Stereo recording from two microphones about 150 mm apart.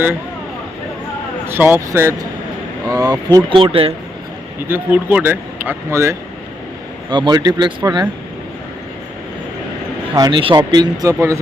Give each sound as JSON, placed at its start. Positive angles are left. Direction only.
{"t": 1.5, "sound": "speech", "side_deg": -15}
{"t": 4.7, "sound": "speech", "side_deg": -15}
{"t": 7.1, "sound": "speech", "side_deg": -30}
{"t": 10.2, "sound": "speech", "side_deg": -30}